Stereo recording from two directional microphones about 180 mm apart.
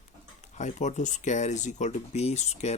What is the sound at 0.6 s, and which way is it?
Speech, 40° left (ahead or behind).